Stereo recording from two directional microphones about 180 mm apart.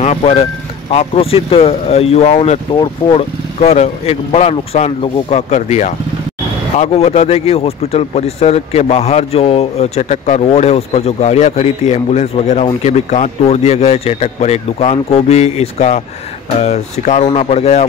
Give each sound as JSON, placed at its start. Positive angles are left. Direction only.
{"t": 0.0, "sound": "speech", "side_deg": 35}
{"t": 2.7, "sound": "speech", "side_deg": 25}